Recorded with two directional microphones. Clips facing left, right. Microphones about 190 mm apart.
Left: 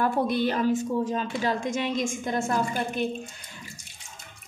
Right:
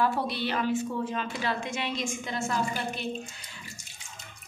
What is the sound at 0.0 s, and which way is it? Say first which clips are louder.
A woman's voice: left 4 dB; 50° left (ahead or behind).